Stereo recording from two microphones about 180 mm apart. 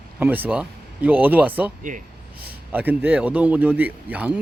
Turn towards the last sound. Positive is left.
turn(degrees=-10)  # may be behind; listen again after turning